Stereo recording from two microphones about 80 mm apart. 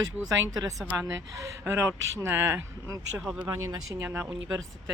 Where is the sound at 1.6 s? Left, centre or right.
Right.